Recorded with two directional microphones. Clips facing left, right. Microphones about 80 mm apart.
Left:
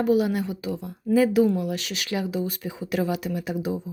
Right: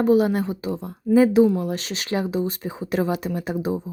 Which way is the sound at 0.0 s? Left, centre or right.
Right.